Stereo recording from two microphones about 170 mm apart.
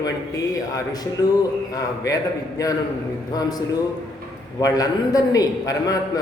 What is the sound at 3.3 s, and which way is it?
A man's voice, 20° left (ahead or behind).